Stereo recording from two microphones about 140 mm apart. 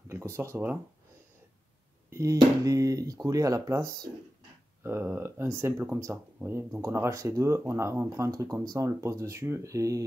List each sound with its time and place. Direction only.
0.1 s speech: 20° right (ahead or behind)
2.0 s speech: 25° right (ahead or behind)
4.8 s speech: 15° right (ahead or behind)